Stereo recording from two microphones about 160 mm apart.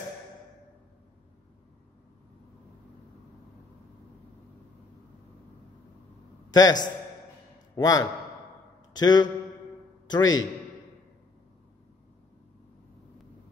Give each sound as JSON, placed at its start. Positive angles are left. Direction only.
{"t": 6.5, "sound": "a man's voice", "side_deg": 25}